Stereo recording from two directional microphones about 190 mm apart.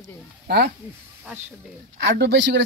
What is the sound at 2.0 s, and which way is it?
Speech, 60° right (ahead or behind).